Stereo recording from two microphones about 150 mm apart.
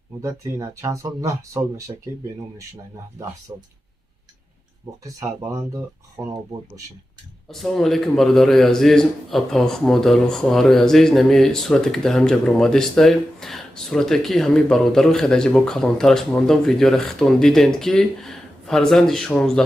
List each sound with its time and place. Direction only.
0.2 s speech: 20° right (ahead or behind)
3.5 s speech: 20° right (ahead or behind)
5.0 s speech: 20° right (ahead or behind)
7.4 s a man's voice: centre (ahead or behind)